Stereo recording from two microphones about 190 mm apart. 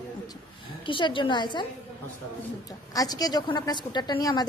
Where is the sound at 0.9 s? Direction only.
25° left (ahead or behind).